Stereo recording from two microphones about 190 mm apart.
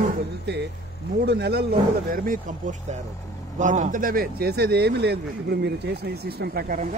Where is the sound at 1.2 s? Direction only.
60° right (ahead or behind).